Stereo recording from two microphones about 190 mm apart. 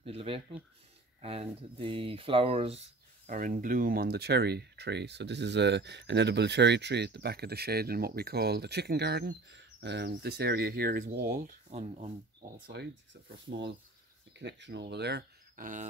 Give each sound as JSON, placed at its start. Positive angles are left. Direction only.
{"t": 0.0, "sound": "speech", "side_deg": -30}
{"t": 3.3, "sound": "speech", "side_deg": -45}
{"t": 12.7, "sound": "speech", "side_deg": -60}
{"t": 14.3, "sound": "speech", "side_deg": -70}
{"t": 15.5, "sound": "speech", "side_deg": -45}